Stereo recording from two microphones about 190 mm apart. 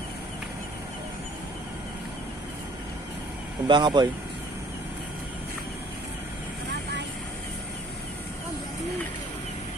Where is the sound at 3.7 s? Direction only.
25° right (ahead or behind).